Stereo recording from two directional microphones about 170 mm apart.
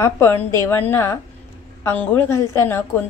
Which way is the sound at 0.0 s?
15° left (ahead or behind).